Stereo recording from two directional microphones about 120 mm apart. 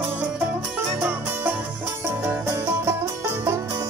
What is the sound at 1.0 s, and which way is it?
Music, 15° right (ahead or behind).